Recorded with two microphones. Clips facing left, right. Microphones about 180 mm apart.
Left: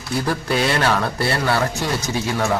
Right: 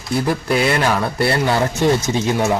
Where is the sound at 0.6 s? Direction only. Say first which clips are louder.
Even; 10° right (ahead or behind).